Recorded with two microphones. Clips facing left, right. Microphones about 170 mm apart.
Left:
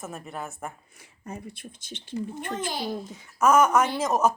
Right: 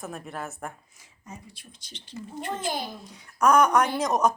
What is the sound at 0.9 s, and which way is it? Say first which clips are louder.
Speech: left 5 dB; 60° left (ahead or behind).